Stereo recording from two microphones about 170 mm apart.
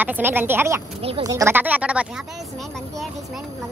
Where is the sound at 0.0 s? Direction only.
10° right (ahead or behind).